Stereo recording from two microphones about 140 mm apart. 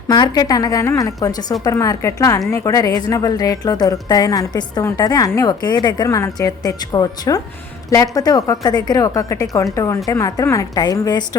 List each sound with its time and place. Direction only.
0.1 s a woman's voice: 30° left (ahead or behind)